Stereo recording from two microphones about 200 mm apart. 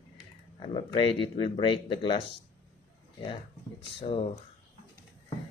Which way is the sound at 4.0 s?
30° left (ahead or behind).